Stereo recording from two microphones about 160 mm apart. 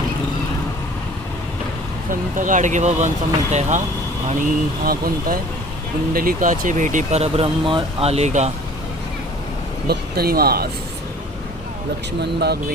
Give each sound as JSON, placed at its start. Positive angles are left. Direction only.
{"t": 2.0, "sound": "speech", "side_deg": -55}
{"t": 9.9, "sound": "speech", "side_deg": -75}
{"t": 12.2, "sound": "speech", "side_deg": -90}